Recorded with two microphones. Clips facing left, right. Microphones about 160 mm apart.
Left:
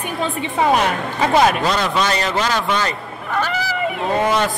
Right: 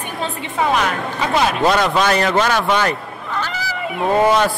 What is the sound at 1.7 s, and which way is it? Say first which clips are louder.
A man's voice: right 3 dB; 55° right (ahead or behind).